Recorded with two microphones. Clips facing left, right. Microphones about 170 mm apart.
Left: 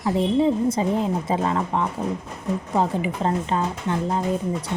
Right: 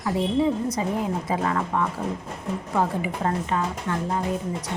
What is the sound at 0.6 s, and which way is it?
Speech, 25° left (ahead or behind).